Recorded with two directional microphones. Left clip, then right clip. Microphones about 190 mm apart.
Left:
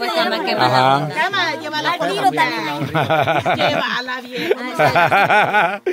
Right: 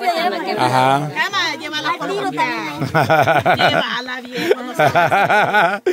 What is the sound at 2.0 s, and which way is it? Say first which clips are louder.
Speech: left 4 dB; 25° left (ahead or behind).